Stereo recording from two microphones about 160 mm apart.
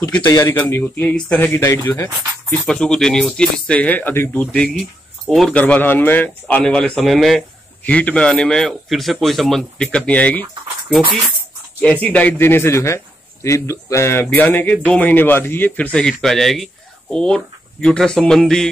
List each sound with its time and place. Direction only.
0.0 s a man's voice: 15° left (ahead or behind)
2.5 s speech: 5° left (ahead or behind)
11.8 s a man's voice: 10° left (ahead or behind)